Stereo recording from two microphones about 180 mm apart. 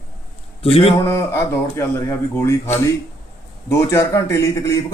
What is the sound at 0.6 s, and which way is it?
Speech, 30° left (ahead or behind).